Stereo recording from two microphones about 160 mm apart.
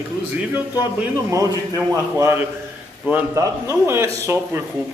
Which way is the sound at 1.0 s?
20° right (ahead or behind).